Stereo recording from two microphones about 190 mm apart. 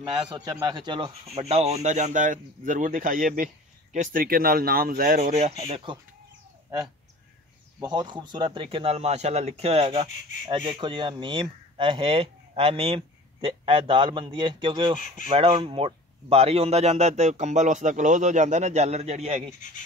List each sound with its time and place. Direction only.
0.0 s speech: 25° right (ahead or behind)
7.8 s speech: 20° right (ahead or behind)